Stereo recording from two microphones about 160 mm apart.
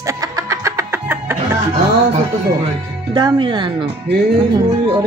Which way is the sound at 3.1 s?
30° right (ahead or behind).